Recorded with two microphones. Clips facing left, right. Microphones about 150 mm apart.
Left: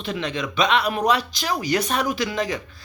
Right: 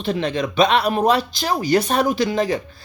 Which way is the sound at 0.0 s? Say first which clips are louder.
Right 5 dB; 35° right (ahead or behind).